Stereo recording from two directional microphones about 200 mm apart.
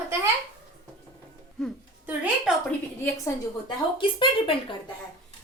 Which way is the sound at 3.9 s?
25° left (ahead or behind).